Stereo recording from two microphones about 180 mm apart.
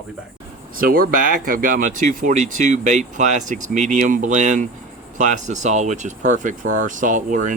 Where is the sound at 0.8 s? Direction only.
50° right (ahead or behind).